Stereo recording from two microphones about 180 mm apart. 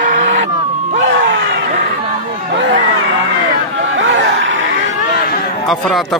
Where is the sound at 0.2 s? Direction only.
90° right.